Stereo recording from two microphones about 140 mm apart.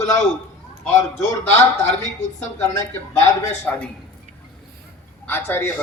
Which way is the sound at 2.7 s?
20° left (ahead or behind).